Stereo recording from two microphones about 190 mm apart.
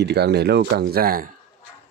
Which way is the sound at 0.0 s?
60° right (ahead or behind).